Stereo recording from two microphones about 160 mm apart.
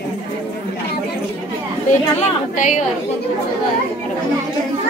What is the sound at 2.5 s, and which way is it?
Speech, 50° left (ahead or behind).